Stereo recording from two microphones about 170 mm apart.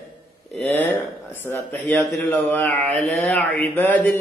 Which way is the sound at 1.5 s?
10° left (ahead or behind).